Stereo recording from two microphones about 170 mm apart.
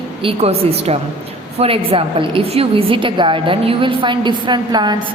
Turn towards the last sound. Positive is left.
turn(degrees=-25)  # may be behind; listen again after turning